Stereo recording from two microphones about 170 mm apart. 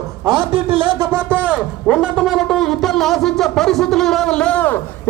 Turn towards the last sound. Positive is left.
turn(degrees=10)  # may be behind; listen again after turning